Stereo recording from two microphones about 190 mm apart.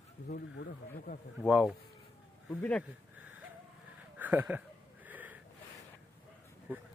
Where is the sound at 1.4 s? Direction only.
5° right (ahead or behind).